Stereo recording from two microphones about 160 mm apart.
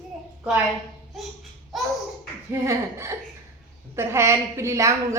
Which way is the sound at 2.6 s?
15° right (ahead or behind).